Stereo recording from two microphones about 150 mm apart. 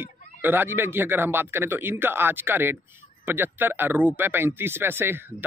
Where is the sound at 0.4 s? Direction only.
15° right (ahead or behind).